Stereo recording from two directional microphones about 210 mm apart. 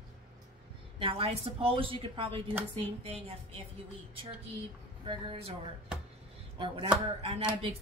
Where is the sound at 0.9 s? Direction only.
25° right (ahead or behind).